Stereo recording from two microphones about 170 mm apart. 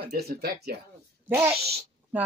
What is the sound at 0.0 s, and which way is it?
Speech, 70° right (ahead or behind).